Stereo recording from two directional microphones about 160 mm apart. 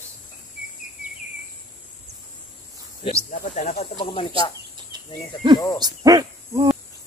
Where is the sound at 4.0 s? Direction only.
30° left (ahead or behind).